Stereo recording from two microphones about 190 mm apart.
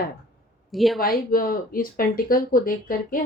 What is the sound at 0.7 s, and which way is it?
Speech, centre (ahead or behind).